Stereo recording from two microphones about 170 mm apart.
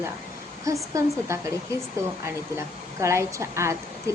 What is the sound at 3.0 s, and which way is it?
A woman's voice, 15° right (ahead or behind).